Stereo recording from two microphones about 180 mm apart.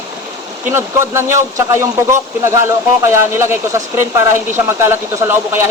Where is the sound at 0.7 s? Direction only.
15° right (ahead or behind).